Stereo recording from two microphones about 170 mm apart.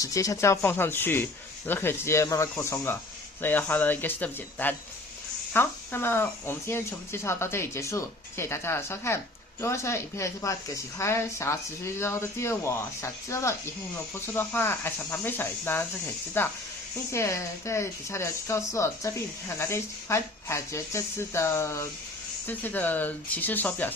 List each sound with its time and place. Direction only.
0.0 s speech: 20° left (ahead or behind)